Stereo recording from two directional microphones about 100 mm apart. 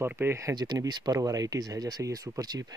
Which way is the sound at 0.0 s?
25° right (ahead or behind).